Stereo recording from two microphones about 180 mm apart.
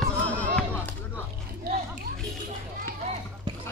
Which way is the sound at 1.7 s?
60° right (ahead or behind).